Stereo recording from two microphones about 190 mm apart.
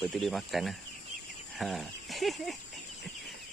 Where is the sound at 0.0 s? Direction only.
Centre (ahead or behind).